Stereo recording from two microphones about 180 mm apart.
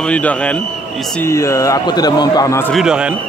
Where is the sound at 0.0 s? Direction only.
5° left (ahead or behind).